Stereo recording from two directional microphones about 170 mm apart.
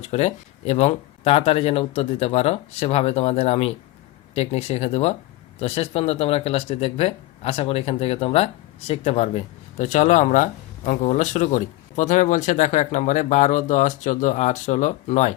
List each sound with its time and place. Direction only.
0.0 s speech: 40° left (ahead or behind)